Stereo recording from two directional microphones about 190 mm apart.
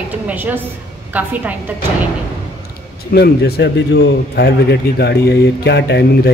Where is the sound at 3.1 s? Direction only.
60° left (ahead or behind).